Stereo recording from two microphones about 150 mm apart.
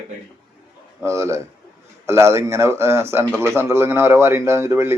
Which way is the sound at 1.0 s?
20° right (ahead or behind).